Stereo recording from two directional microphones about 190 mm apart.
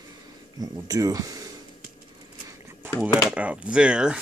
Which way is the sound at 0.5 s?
20° right (ahead or behind).